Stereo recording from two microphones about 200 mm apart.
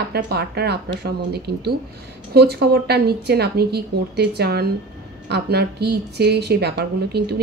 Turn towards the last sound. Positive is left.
turn(degrees=-55)  # may be behind; listen again after turning